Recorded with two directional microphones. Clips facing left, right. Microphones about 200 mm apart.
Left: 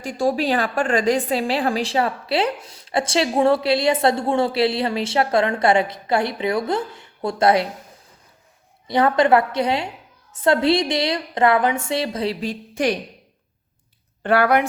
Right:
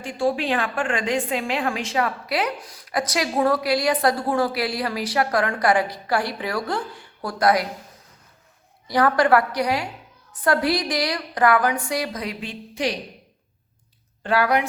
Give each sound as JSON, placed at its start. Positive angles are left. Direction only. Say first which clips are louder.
{"t": 0.0, "sound": "a woman's voice", "louder": "left 2 dB", "side_deg": 40}
{"t": 8.9, "sound": "a woman's voice", "louder": "left 2 dB", "side_deg": 25}
{"t": 14.2, "sound": "speech", "louder": "left 3 dB", "side_deg": 55}